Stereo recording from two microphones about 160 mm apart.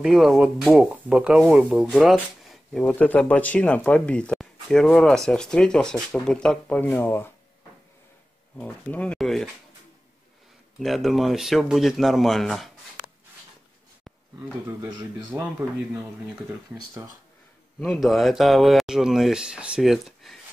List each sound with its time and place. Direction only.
0.0 s speech: centre (ahead or behind)
8.5 s speech: 10° left (ahead or behind)
10.8 s speech: centre (ahead or behind)
15.3 s speech: 15° right (ahead or behind)
16.7 s speech: 20° right (ahead or behind)
17.7 s speech: 5° left (ahead or behind)